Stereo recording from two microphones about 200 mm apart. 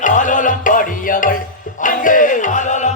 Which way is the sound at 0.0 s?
40° left (ahead or behind).